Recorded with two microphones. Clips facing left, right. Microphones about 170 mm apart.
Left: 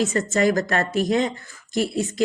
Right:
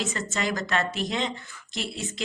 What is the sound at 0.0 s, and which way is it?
Speech, 50° left (ahead or behind).